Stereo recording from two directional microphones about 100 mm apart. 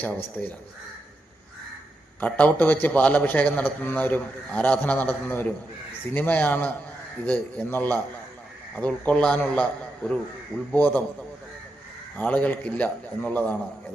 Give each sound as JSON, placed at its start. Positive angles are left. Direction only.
{"t": 0.0, "sound": "a man's voice", "side_deg": 20}
{"t": 2.2, "sound": "a man's voice", "side_deg": 15}
{"t": 12.1, "sound": "a man's voice", "side_deg": 15}